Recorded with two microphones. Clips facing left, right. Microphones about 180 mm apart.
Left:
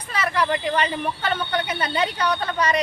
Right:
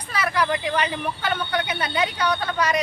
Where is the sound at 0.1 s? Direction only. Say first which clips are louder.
Even; 10° right (ahead or behind).